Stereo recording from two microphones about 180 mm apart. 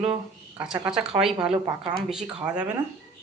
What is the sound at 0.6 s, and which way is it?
A woman's voice, 5° right (ahead or behind).